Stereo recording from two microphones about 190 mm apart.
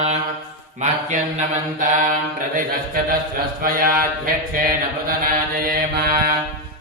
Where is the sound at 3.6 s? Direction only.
50° right (ahead or behind).